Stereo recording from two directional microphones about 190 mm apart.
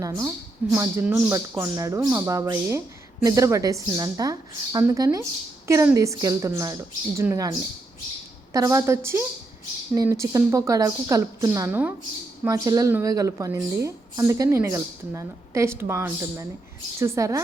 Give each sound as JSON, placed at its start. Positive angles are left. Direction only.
{"t": 0.0, "sound": "speech", "side_deg": -15}
{"t": 8.5, "sound": "speech", "side_deg": -15}